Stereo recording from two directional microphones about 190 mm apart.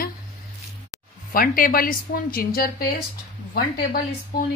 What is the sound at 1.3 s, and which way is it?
Speech, 50° left (ahead or behind).